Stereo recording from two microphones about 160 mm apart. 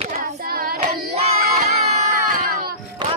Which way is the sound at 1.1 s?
40° right (ahead or behind).